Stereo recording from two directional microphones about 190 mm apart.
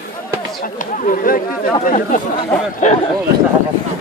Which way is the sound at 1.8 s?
45° left (ahead or behind).